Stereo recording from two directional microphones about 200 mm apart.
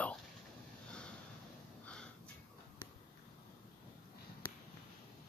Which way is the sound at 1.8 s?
5° left (ahead or behind).